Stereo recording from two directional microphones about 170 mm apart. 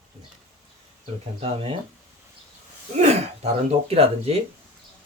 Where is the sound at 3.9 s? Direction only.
35° right (ahead or behind).